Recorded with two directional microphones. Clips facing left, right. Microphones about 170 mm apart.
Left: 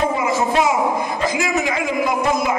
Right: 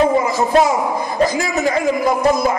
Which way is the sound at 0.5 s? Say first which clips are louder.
Right 4 dB; 40° right (ahead or behind).